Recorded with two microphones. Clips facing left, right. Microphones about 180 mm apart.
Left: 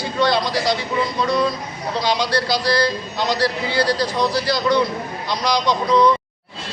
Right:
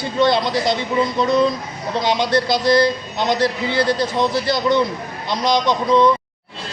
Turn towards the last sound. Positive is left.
turn(degrees=-20)  # may be behind; listen again after turning